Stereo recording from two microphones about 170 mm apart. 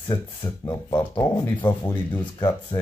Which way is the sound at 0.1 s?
25° left (ahead or behind).